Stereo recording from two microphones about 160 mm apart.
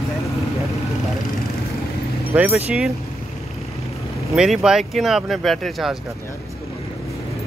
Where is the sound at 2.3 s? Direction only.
10° right (ahead or behind).